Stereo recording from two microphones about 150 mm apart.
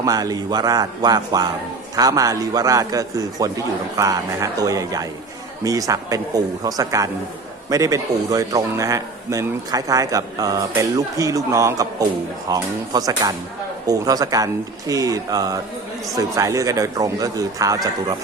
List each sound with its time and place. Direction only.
0.0 s a man's voice: 25° right (ahead or behind)